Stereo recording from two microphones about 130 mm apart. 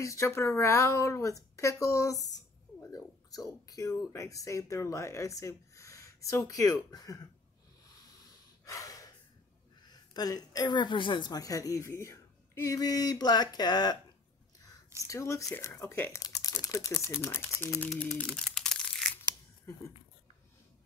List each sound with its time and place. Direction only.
0.0 s speech: 20° left (ahead or behind)
8.6 s gasp: 25° left (ahead or behind)
9.8 s a woman's voice: 30° left (ahead or behind)
15.0 s speech: 25° left (ahead or behind)
17.6 s crumpling: 5° left (ahead or behind)